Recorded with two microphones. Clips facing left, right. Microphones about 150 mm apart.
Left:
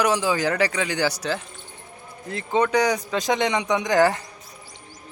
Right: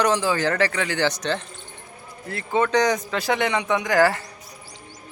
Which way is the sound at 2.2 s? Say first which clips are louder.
Even; 20° left (ahead or behind).